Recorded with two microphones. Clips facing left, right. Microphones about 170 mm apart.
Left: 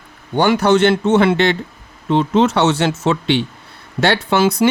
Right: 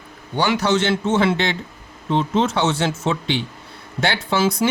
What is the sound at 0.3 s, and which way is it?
A man's voice, 55° left (ahead or behind).